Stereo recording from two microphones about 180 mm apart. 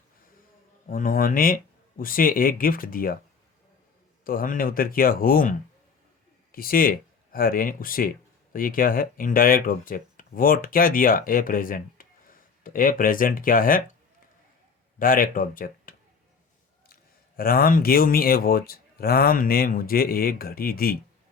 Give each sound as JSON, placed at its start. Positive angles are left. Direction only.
{"t": 0.9, "sound": "speech", "side_deg": 50}
{"t": 4.2, "sound": "speech", "side_deg": 50}
{"t": 14.9, "sound": "speech", "side_deg": 50}